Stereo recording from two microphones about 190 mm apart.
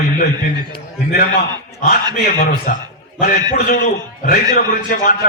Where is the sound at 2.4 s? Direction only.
50° left (ahead or behind).